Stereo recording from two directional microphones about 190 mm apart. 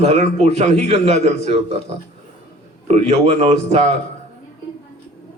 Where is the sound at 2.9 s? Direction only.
35° right (ahead or behind).